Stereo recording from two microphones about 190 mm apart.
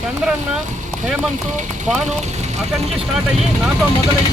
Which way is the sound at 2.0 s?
35° right (ahead or behind).